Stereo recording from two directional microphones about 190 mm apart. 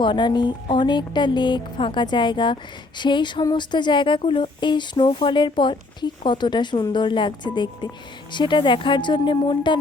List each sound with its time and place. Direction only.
0.0 s speech: 25° left (ahead or behind)